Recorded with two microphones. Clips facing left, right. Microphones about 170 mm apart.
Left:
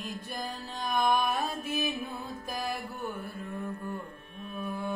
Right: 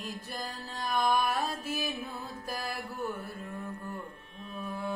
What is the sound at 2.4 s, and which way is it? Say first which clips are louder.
Mantra: left 3 dB; 20° left (ahead or behind).